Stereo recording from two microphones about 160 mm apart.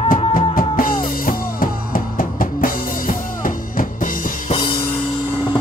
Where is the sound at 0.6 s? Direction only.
60° left (ahead or behind).